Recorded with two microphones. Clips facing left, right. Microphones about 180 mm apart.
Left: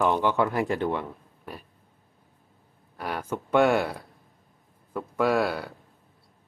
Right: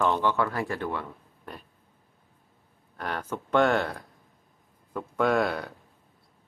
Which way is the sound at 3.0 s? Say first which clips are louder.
Left 2 dB; 10° left (ahead or behind).